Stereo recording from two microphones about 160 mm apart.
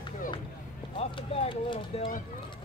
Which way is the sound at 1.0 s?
35° left (ahead or behind).